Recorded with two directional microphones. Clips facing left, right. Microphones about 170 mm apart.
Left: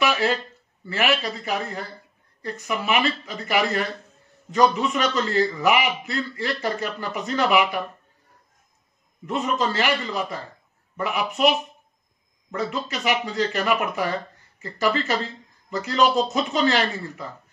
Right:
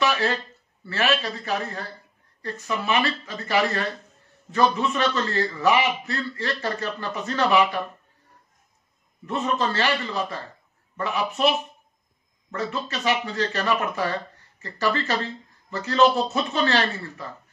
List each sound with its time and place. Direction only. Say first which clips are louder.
0.0 s a sound: left 1 dB; 15° left (ahead or behind)
0.8 s a man's voice: left 1 dB; 15° left (ahead or behind)
9.2 s a man's voice: left 1 dB; 15° left (ahead or behind)